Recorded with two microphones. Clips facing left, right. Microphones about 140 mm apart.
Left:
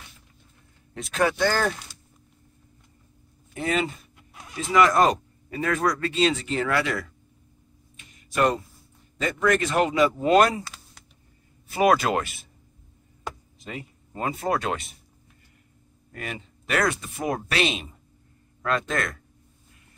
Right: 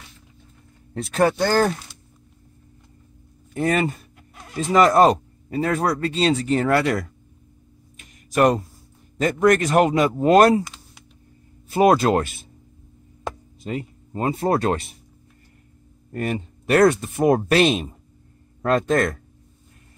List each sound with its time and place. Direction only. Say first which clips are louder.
0.9 s speech: right 5 dB; 35° right (ahead or behind)
3.5 s speech: right 5 dB; 50° right (ahead or behind)
4.7 s speech: right 4 dB; 35° right (ahead or behind)
8.4 s speech: right 5 dB; 45° right (ahead or behind)
11.7 s speech: right 4 dB; 30° right (ahead or behind)
13.7 s speech: right 8 dB; 35° right (ahead or behind)
16.1 s speech: right 10 dB; 45° right (ahead or behind)